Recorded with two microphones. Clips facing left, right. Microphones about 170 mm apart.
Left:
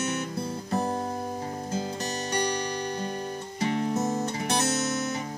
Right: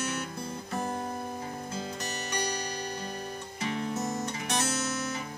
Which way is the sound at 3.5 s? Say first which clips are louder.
Left 6 dB; 40° left (ahead or behind).